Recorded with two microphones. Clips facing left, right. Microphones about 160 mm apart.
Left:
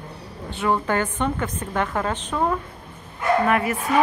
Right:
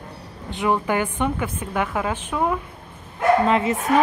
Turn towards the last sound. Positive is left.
turn(degrees=-20)  # may be behind; listen again after turning